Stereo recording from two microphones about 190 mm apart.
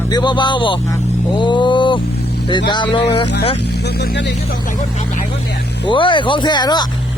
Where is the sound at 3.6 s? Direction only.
60° left (ahead or behind).